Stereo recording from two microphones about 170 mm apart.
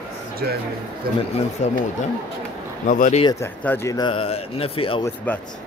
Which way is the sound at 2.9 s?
45° left (ahead or behind).